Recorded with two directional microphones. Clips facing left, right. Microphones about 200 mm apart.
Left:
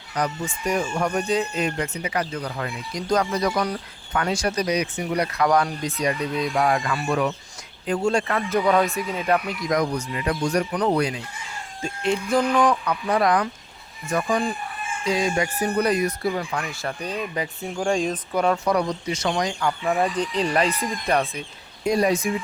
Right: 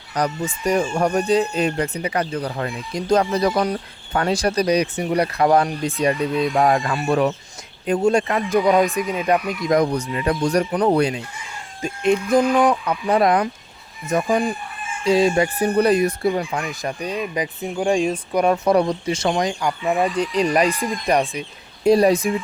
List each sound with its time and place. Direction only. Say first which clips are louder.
0.2 s speech: right 3 dB; 35° right (ahead or behind)
7.9 s speech: right 4 dB; 20° right (ahead or behind)
9.6 s speech: right 6 dB; 30° right (ahead or behind)
11.8 s speech: right 5 dB; 20° right (ahead or behind)
21.8 s speech: right 6 dB; 35° right (ahead or behind)